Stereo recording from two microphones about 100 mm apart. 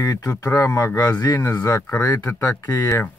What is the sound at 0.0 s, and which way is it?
Speech, 35° left (ahead or behind).